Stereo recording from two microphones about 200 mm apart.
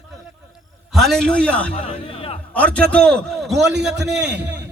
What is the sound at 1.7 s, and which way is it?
Music, 25° left (ahead or behind).